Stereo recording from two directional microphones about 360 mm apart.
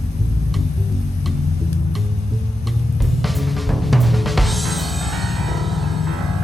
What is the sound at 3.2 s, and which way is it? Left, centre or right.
Drum kit, centre.